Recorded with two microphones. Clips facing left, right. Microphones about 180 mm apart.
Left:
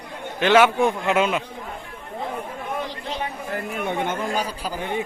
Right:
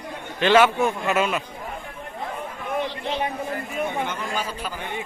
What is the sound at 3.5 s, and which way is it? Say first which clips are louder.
Chatter: left 1 dB; 60° left (ahead or behind).